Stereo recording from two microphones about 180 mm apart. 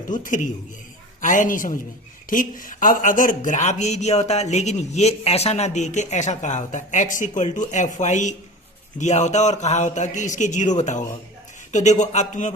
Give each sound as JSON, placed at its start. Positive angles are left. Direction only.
{"t": 0.1, "sound": "a woman's voice", "side_deg": 45}